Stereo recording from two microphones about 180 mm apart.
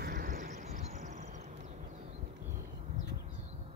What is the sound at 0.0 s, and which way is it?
Vehicle, 55° right (ahead or behind).